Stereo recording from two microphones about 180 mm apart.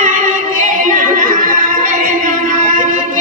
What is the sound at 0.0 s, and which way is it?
Singing, 45° right (ahead or behind).